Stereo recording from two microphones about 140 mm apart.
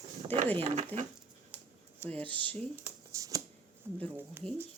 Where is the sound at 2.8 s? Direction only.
25° right (ahead or behind).